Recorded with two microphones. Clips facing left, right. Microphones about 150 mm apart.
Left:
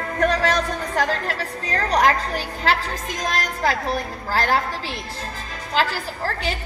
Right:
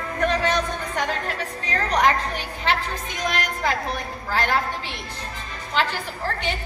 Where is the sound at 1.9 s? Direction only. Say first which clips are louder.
Left 2 dB; 40° left (ahead or behind).